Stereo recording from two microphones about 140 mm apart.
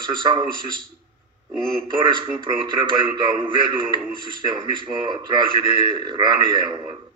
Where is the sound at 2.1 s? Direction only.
35° right (ahead or behind).